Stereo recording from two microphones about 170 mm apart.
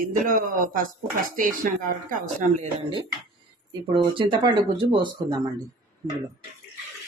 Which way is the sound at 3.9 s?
30° right (ahead or behind).